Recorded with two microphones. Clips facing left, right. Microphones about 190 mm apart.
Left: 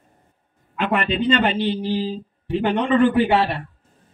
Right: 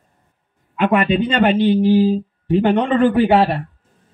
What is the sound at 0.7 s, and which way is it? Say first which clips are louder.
A man's voice: right 6 dB; 45° right (ahead or behind).